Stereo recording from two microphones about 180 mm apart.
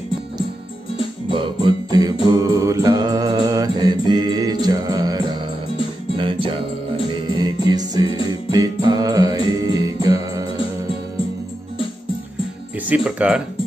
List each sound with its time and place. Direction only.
1.3 s music: 25° right (ahead or behind)
2.2 s mantra: 20° right (ahead or behind)
6.1 s music: 30° right (ahead or behind)
8.5 s mantra: 20° right (ahead or behind)
9.7 s music: 20° right (ahead or behind)
12.8 s music: 5° right (ahead or behind)